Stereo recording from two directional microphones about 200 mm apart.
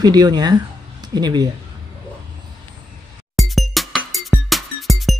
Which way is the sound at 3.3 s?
Centre (ahead or behind).